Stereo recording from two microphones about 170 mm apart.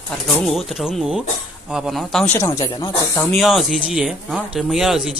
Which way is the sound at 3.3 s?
Centre (ahead or behind).